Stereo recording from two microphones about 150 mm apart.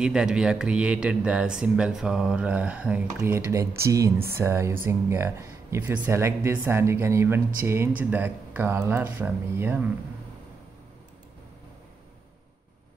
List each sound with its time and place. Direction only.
0.0 s speech: 5° right (ahead or behind)